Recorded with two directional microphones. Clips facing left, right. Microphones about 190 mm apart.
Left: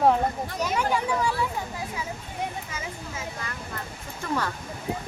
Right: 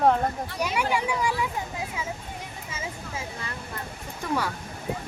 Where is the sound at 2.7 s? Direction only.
30° right (ahead or behind).